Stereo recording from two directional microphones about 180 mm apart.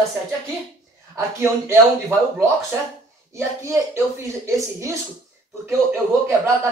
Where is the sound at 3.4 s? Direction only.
15° right (ahead or behind).